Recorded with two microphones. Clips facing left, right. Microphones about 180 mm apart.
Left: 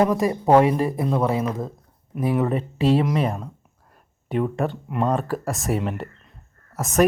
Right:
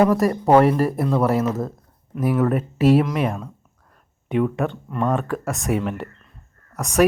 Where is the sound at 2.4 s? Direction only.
5° right (ahead or behind).